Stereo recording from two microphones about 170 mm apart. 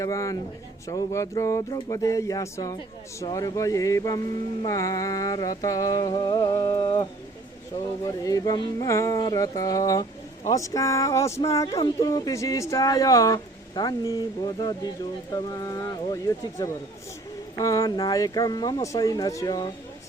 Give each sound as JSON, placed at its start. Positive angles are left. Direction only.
{"t": 0.0, "sound": "speech", "side_deg": 20}